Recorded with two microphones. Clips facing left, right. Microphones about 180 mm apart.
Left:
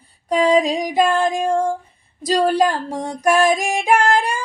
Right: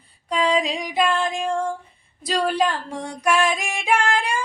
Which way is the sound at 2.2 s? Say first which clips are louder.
Left 5 dB; 40° left (ahead or behind).